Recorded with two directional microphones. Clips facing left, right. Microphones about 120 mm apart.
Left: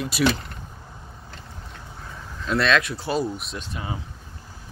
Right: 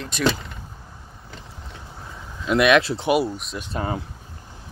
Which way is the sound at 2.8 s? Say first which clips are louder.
Right 5 dB; 25° right (ahead or behind).